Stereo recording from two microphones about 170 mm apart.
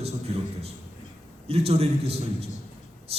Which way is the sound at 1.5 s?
35° right (ahead or behind).